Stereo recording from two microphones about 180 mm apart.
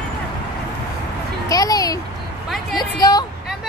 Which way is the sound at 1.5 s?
20° left (ahead or behind).